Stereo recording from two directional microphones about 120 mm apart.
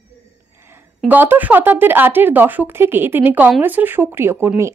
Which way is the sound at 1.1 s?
15° right (ahead or behind).